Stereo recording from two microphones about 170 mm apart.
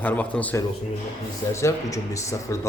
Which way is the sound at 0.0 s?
10° left (ahead or behind).